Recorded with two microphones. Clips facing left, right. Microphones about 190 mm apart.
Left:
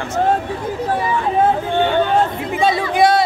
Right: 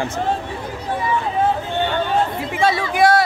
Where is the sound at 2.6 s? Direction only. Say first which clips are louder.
Left 1 dB; 20° left (ahead or behind).